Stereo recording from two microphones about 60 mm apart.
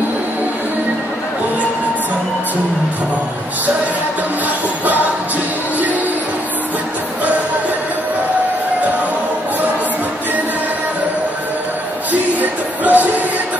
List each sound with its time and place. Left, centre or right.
4.8 s music: right
12.1 s music: right